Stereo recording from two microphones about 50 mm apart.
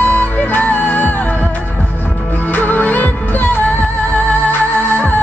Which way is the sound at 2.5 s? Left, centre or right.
Left.